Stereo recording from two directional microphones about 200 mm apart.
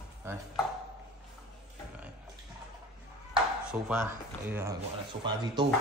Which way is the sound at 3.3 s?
5° right (ahead or behind).